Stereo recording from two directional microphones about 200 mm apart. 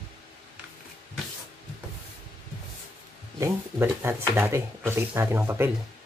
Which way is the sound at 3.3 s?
15° right (ahead or behind).